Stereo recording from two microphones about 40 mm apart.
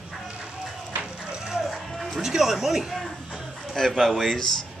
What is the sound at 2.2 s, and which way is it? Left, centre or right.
Speech, centre.